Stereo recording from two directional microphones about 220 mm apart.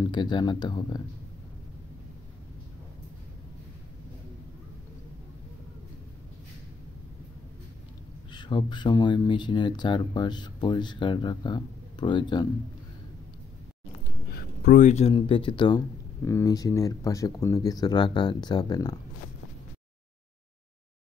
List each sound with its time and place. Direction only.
0.0 s speech: 20° left (ahead or behind)
8.3 s speech: 20° left (ahead or behind)
14.3 s speech: 40° left (ahead or behind); by 18.9 s 15° left (ahead or behind)